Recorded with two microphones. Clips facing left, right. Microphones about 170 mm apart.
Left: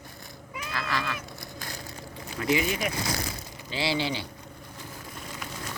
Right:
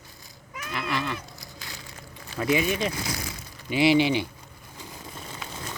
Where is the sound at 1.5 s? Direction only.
45° left (ahead or behind).